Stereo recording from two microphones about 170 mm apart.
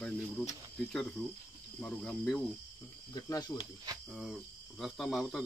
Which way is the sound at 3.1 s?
20° left (ahead or behind).